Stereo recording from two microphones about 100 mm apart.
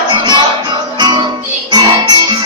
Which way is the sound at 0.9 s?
45° right (ahead or behind).